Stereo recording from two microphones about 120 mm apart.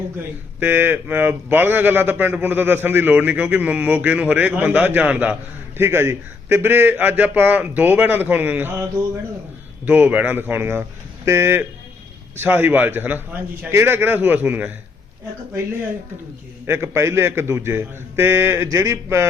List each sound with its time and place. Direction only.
0.6 s speech: 15° right (ahead or behind)
9.8 s a man's voice: 15° right (ahead or behind)
16.6 s a man's voice: 20° right (ahead or behind)